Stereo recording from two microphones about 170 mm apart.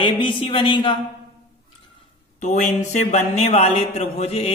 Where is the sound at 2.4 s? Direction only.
45° left (ahead or behind).